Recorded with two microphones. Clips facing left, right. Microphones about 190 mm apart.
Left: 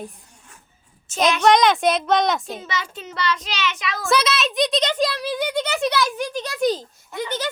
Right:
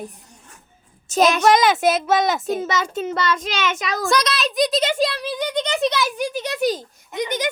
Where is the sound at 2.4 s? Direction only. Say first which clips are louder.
Right 7 dB; 45° right (ahead or behind).